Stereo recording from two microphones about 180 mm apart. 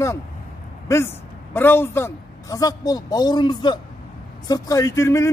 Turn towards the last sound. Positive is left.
turn(degrees=15)  # may be behind; listen again after turning